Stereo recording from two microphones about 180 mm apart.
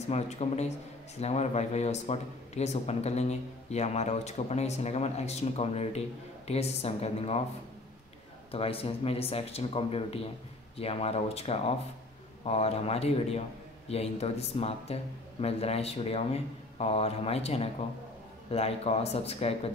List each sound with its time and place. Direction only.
0.0 s speech: 35° left (ahead or behind)
8.5 s speech: 30° left (ahead or behind)